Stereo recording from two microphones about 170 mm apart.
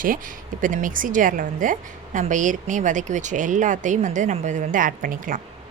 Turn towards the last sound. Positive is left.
turn(degrees=-50)  # may be behind; listen again after turning